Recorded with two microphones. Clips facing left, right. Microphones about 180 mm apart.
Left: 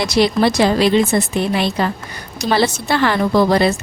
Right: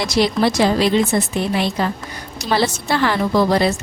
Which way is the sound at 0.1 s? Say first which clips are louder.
Left 2 dB; 65° left (ahead or behind).